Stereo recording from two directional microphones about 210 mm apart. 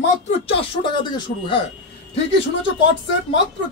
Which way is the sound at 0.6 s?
20° left (ahead or behind).